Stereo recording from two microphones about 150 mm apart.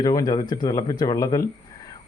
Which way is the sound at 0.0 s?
25° left (ahead or behind).